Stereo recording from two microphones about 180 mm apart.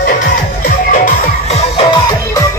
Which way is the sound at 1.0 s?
35° left (ahead or behind).